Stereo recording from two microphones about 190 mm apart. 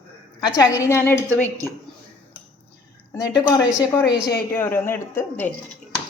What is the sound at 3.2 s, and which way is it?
A woman's voice, 20° left (ahead or behind).